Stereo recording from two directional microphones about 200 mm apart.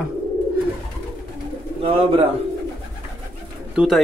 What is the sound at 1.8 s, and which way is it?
Speech, 30° right (ahead or behind).